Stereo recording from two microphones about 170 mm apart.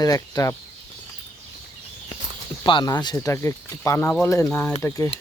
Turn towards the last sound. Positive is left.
turn(degrees=15)  # may be behind; listen again after turning